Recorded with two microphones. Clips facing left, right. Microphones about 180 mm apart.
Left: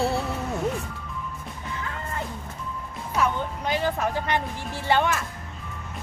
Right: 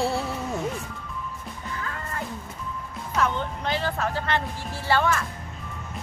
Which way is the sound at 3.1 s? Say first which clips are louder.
Even; 10° left (ahead or behind).